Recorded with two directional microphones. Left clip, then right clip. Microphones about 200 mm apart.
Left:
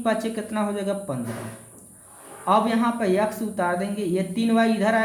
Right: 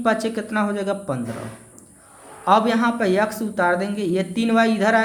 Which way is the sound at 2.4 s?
30° right (ahead or behind).